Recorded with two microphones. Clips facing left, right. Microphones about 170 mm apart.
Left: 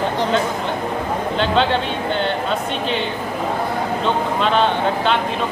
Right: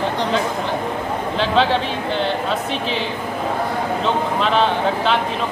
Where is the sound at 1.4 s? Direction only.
Centre (ahead or behind).